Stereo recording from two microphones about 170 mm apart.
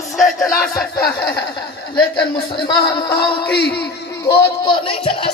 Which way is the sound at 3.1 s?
70° left (ahead or behind).